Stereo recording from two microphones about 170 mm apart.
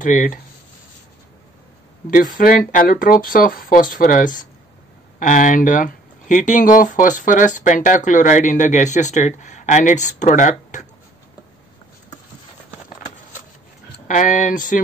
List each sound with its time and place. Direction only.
0.0 s speech: 50° left (ahead or behind)
2.0 s speech: 55° left (ahead or behind)
14.0 s speech: 50° left (ahead or behind)